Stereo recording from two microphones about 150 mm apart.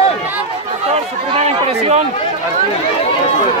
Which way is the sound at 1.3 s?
45° right (ahead or behind).